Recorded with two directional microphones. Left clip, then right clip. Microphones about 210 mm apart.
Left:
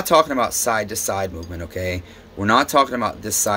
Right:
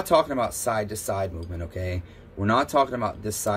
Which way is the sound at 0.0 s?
20° left (ahead or behind).